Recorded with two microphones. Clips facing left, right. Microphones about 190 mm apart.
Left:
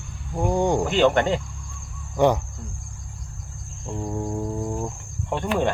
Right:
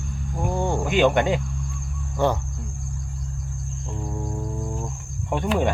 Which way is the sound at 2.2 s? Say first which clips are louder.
Left 3 dB; 15° left (ahead or behind).